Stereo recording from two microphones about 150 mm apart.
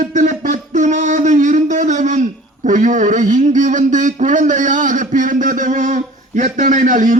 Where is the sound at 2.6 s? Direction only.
60° right (ahead or behind).